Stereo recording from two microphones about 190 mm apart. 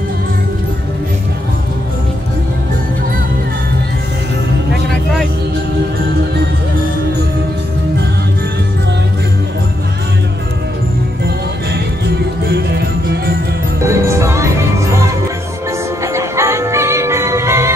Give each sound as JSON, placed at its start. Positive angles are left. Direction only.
{"t": 12.4, "sound": "music", "side_deg": -60}
{"t": 13.8, "sound": "music", "side_deg": -15}
{"t": 16.0, "sound": "music", "side_deg": -15}